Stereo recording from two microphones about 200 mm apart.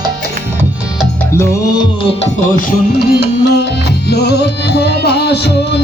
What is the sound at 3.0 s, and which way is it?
Music, 55° left (ahead or behind).